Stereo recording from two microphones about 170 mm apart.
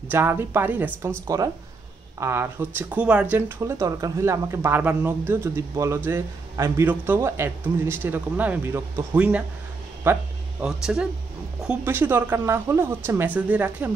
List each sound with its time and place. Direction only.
0.1 s speech: 15° right (ahead or behind)